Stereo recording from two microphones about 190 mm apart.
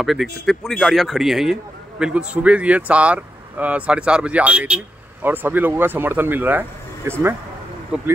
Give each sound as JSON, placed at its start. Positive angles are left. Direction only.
{"t": 0.0, "sound": "a man's voice", "side_deg": 0}